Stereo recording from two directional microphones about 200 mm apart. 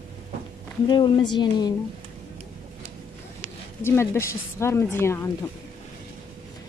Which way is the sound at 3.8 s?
10° left (ahead or behind).